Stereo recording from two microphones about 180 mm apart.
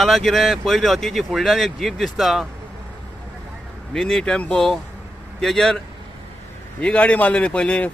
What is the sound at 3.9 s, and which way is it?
Speech, centre (ahead or behind).